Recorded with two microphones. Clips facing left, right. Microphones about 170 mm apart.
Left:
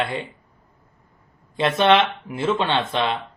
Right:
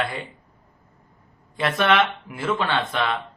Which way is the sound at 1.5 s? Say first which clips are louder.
Left 3 dB; 25° left (ahead or behind).